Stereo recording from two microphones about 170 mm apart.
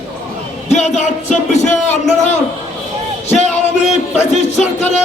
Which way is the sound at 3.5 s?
40° left (ahead or behind).